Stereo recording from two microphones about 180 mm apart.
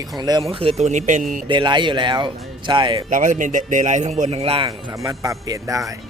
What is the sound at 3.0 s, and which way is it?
A man's voice, 45° right (ahead or behind).